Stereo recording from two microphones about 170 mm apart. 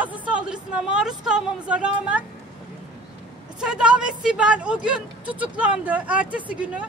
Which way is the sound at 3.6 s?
5° right (ahead or behind).